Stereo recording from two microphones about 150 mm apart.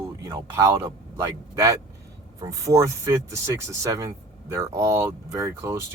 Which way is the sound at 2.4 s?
20° right (ahead or behind).